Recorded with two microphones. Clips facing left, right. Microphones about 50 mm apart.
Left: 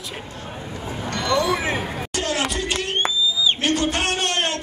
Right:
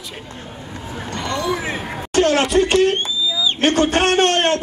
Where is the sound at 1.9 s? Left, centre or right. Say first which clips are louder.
Right 9 dB; right.